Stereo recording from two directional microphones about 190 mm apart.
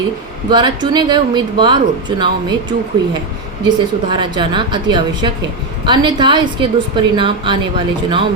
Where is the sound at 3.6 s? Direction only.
25° right (ahead or behind).